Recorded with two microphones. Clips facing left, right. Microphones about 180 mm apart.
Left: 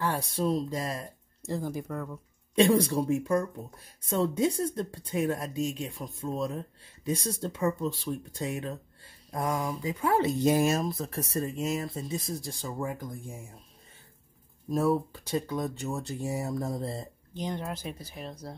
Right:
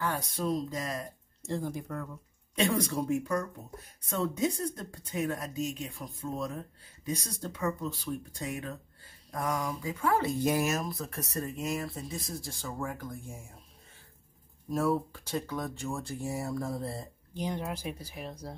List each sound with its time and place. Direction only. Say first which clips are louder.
0.0 s speech: left 3 dB; 30° left (ahead or behind)
1.5 s speech: left 2 dB; 5° left (ahead or behind)
2.5 s speech: left 6 dB; 30° left (ahead or behind)
14.7 s speech: left 3 dB; 15° left (ahead or behind)
17.3 s speech: even; 10° right (ahead or behind)